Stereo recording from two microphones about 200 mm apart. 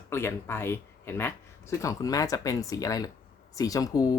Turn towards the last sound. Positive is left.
turn(degrees=20)  # may be behind; listen again after turning